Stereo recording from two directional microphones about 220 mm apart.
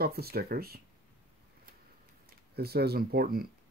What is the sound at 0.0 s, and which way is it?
Speech, 45° right (ahead or behind).